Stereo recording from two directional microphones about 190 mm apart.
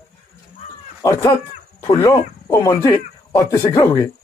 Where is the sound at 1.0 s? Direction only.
20° left (ahead or behind).